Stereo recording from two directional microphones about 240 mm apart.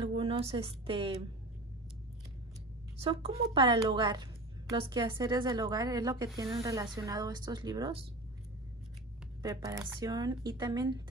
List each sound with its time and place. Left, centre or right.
0.0 s speech: right
3.0 s a woman's voice: right
9.4 s a woman's voice: centre